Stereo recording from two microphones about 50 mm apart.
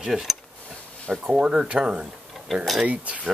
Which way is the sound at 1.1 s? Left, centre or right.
Centre.